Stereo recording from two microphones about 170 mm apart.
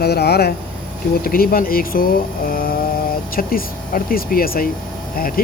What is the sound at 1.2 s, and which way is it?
Speech, 60° left (ahead or behind).